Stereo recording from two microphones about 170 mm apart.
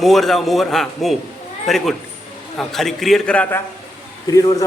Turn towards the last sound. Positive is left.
turn(degrees=20)  # may be behind; listen again after turning